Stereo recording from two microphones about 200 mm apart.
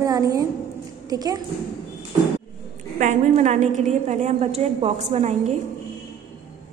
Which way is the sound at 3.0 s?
35° right (ahead or behind).